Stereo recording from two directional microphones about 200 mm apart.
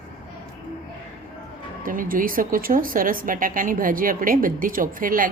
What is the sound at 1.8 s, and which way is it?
Speech, 45° right (ahead or behind).